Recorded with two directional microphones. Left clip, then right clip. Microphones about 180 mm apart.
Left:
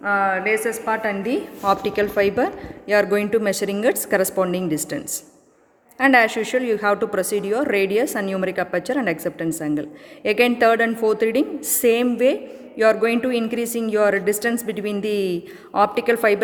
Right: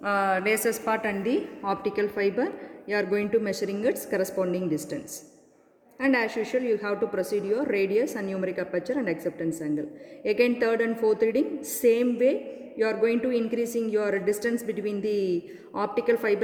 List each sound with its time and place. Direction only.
0.0 s a woman's voice: 45° right (ahead or behind); by 0.7 s 65° right (ahead or behind)
1.6 s a woman's voice: 30° left (ahead or behind)
6.0 s a woman's voice: 40° left (ahead or behind)